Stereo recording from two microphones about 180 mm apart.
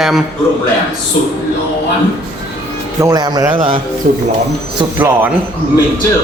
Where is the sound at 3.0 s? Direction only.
20° right (ahead or behind).